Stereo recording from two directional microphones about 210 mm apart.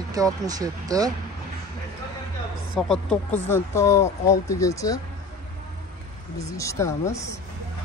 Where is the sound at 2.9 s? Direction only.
5° left (ahead or behind).